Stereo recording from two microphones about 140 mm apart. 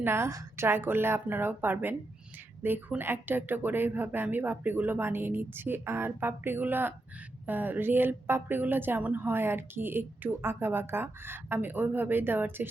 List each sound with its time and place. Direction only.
0.0 s speech: 20° right (ahead or behind)